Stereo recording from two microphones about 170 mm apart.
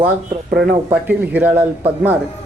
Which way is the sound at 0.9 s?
10° right (ahead or behind).